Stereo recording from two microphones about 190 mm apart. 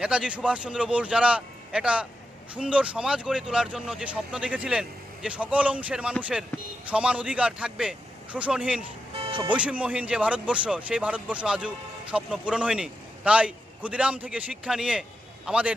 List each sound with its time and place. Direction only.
0.0 s speech: 5° right (ahead or behind)
9.1 s music: 30° right (ahead or behind)
9.4 s speech: 5° right (ahead or behind)